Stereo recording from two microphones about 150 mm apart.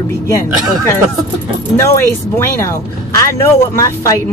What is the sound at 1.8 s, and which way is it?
Speech, 20° left (ahead or behind).